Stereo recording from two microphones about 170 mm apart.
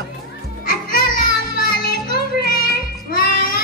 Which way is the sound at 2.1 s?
60° left (ahead or behind).